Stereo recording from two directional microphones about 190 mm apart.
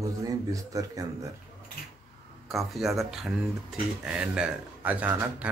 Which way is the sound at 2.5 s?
Centre (ahead or behind).